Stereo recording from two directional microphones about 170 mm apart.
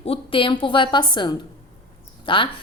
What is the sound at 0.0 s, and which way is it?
A woman's voice, 35° left (ahead or behind).